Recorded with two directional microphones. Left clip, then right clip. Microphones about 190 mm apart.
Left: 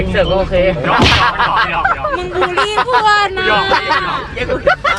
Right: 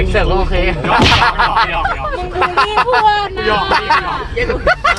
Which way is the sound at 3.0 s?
35° left (ahead or behind).